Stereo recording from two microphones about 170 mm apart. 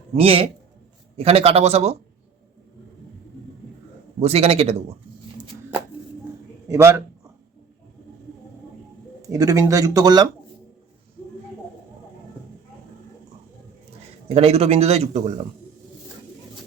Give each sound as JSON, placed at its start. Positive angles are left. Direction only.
{"t": 0.1, "sound": "a man's voice", "side_deg": -35}
{"t": 4.2, "sound": "a man's voice", "side_deg": -35}
{"t": 6.7, "sound": "a man's voice", "side_deg": -15}
{"t": 9.2, "sound": "speech", "side_deg": -20}
{"t": 14.3, "sound": "a man's voice", "side_deg": -35}